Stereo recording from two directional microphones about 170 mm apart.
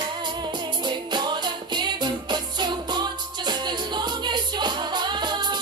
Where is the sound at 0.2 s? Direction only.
25° right (ahead or behind).